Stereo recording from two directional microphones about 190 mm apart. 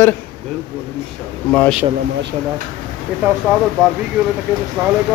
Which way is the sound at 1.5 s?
5° left (ahead or behind).